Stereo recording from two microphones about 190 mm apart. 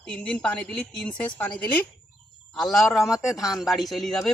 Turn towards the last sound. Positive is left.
turn(degrees=0)  # may be behind; listen again after turning